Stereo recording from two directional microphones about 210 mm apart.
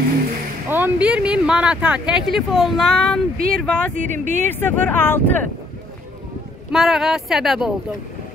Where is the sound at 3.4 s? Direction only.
45° right (ahead or behind).